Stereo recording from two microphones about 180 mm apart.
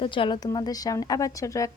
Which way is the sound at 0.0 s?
30° left (ahead or behind).